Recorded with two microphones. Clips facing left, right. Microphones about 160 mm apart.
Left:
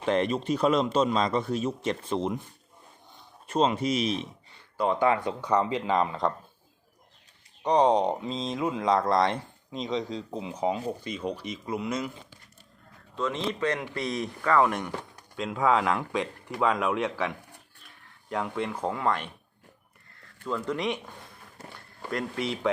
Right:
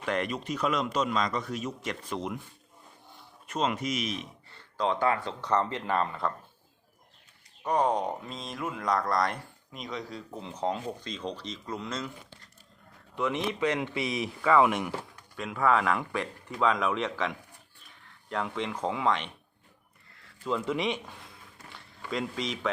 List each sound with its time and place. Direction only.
0.0 s speech: 25° left (ahead or behind)
3.4 s speech: 30° left (ahead or behind)
4.4 s a sound: 10° left (ahead or behind)
5.0 s speech: 15° left (ahead or behind)
7.6 s speech: 20° left (ahead or behind)
10.4 s speech: 10° left (ahead or behind)
13.1 s speech: 15° right (ahead or behind)
15.5 s speech: 15° left (ahead or behind)
18.4 s speech: 10° left (ahead or behind)
20.4 s speech: 5° right (ahead or behind)